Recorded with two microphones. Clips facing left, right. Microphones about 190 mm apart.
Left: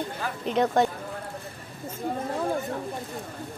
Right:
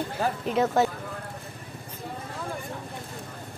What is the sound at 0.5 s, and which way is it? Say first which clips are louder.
Speech: left 2 dB; 5° right (ahead or behind).